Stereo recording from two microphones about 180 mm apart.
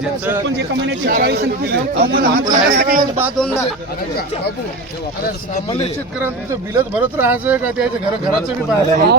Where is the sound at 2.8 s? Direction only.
55° right (ahead or behind).